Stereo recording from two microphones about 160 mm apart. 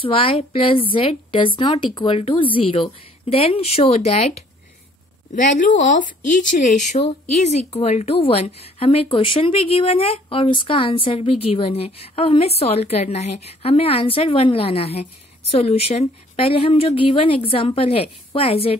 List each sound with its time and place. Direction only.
0.0 s speech: 35° left (ahead or behind)
5.3 s a woman's voice: 55° left (ahead or behind); by 18.7 s 35° left (ahead or behind)